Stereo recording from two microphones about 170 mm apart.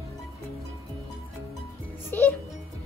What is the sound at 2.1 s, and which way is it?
Speech, 10° left (ahead or behind).